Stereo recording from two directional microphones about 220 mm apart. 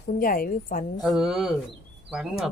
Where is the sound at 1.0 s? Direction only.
Centre (ahead or behind).